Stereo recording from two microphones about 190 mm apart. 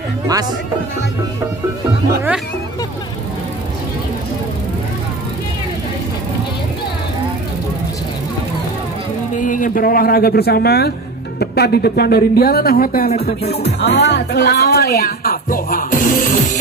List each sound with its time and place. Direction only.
9.4 s speech: 45° left (ahead or behind)
13.4 s music: 35° left (ahead or behind)
13.7 s speech: 60° left (ahead or behind)